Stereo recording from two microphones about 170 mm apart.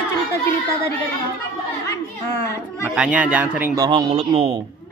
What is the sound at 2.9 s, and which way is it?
Speech, 5° right (ahead or behind).